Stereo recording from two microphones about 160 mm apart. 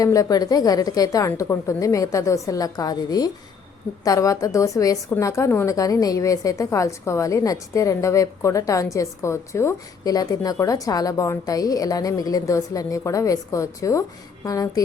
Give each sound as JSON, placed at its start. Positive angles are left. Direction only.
{"t": 0.0, "sound": "a woman's voice", "side_deg": 20}